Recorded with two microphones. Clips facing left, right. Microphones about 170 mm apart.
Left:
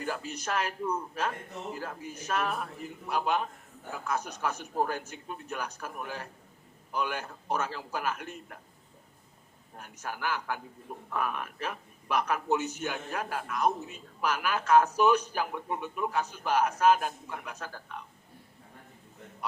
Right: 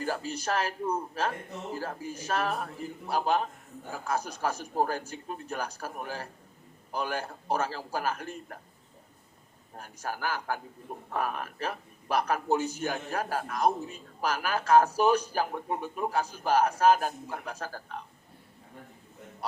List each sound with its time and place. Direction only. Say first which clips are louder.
0.0 s a man's voice: right 3 dB; 35° right (ahead or behind)
9.7 s a man's voice: right 3 dB; 35° right (ahead or behind)